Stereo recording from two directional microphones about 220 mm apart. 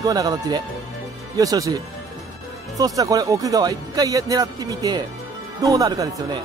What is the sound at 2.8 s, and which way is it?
Speech, 15° right (ahead or behind).